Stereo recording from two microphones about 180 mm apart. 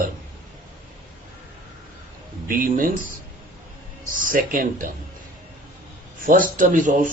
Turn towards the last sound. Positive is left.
turn(degrees=-50)  # may be behind; listen again after turning